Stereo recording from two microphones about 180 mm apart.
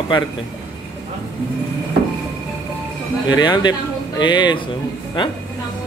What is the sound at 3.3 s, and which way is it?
A man's voice, 25° left (ahead or behind).